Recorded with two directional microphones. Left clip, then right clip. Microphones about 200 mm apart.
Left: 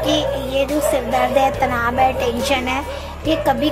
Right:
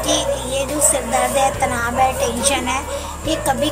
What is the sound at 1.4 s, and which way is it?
Speech, 20° left (ahead or behind).